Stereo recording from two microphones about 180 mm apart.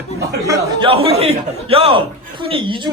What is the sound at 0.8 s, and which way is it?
A man's voice, 30° right (ahead or behind).